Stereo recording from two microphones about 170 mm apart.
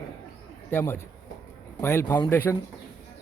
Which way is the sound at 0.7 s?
15° left (ahead or behind).